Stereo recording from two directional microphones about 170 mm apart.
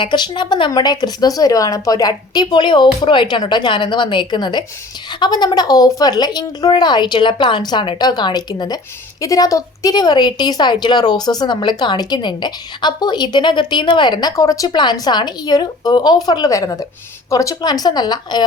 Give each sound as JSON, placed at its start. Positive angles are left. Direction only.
{"t": 0.0, "sound": "a woman's voice", "side_deg": 25}